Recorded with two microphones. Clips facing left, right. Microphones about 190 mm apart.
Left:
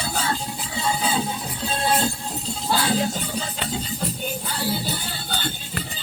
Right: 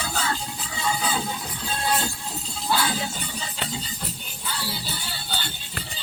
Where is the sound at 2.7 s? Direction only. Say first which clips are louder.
Left 3 dB; 40° left (ahead or behind).